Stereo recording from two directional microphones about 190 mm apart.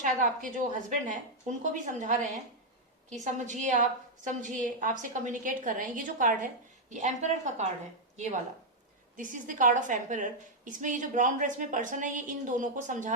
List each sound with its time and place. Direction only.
0.0 s a woman's voice: 40° right (ahead or behind)